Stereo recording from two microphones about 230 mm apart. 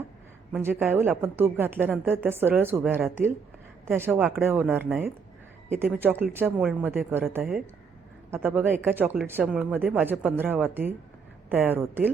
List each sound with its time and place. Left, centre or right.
0.5 s a woman's voice: centre